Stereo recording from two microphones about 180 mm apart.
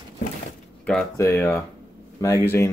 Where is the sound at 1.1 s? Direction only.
15° left (ahead or behind).